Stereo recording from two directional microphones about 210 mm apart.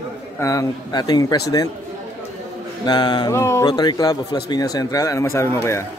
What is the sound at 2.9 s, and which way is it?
A man's voice, 20° left (ahead or behind).